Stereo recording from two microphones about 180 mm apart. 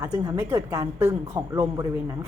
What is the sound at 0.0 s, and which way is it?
A woman's voice, 15° right (ahead or behind).